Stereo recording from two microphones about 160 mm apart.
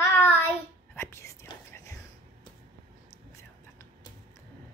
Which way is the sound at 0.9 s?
15° left (ahead or behind).